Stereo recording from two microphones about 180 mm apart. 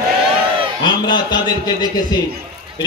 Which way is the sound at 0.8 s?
25° left (ahead or behind).